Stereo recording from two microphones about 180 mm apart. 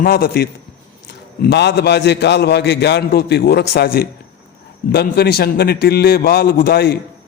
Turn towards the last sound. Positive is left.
turn(degrees=60)  # may be behind; listen again after turning